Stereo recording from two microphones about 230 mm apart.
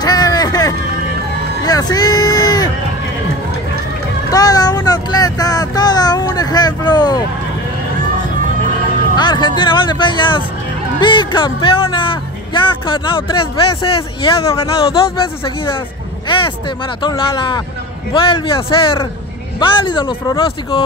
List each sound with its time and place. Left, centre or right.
0.0 s music: centre
1.6 s a sound: centre
4.3 s child singing: centre
9.1 s speech: centre